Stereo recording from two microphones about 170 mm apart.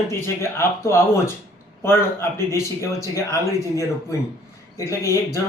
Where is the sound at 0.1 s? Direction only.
15° left (ahead or behind).